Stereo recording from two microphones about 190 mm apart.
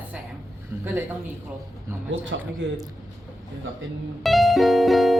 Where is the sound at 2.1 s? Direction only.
80° right.